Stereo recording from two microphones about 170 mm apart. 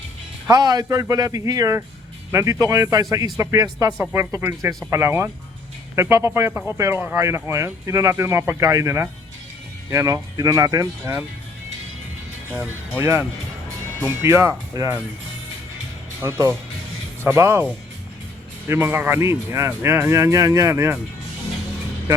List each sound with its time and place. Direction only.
0.4 s speech: 25° right (ahead or behind)
12.5 s speech: 10° right (ahead or behind)
16.2 s speech: 15° right (ahead or behind)
18.7 s speech: 10° right (ahead or behind)